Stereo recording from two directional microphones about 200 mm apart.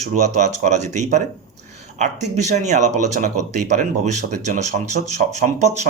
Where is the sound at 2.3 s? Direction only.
35° right (ahead or behind).